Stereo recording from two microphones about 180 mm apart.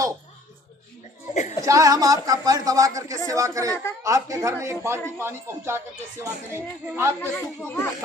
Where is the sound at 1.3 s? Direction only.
40° left (ahead or behind).